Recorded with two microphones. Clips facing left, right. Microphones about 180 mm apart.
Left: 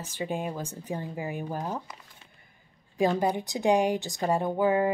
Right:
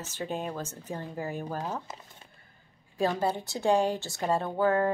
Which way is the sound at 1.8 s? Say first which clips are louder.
Right 3 dB; 25° right (ahead or behind).